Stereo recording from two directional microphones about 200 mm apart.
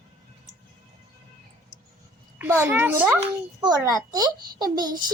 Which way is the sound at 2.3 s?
10° right (ahead or behind).